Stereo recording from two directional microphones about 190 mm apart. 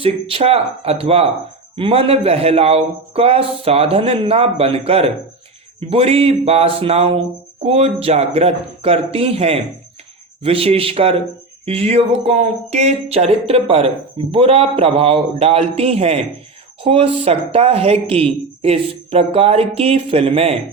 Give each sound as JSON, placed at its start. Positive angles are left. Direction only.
{"t": 0.0, "sound": "speech", "side_deg": -30}